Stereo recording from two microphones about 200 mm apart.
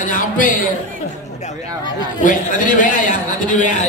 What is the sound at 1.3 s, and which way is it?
Chatter, 35° left (ahead or behind).